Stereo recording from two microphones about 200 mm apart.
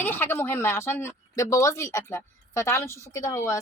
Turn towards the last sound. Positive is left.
turn(degrees=15)  # may be behind; listen again after turning